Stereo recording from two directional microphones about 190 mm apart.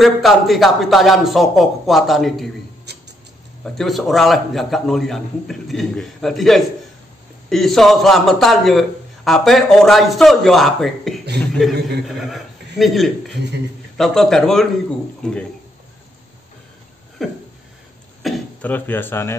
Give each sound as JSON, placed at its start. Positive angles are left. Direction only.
{"t": 0.0, "sound": "a man's voice", "side_deg": 0}
{"t": 2.9, "sound": "tick-tock", "side_deg": -60}
{"t": 3.6, "sound": "a man's voice", "side_deg": 0}
{"t": 12.2, "sound": "a man's voice", "side_deg": 0}
{"t": 17.2, "sound": "a man's voice", "side_deg": 0}